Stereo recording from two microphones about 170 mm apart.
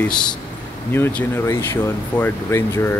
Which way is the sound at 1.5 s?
15° left (ahead or behind).